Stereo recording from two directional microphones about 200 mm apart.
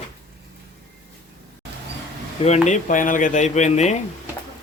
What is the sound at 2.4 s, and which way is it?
Speech, 35° left (ahead or behind).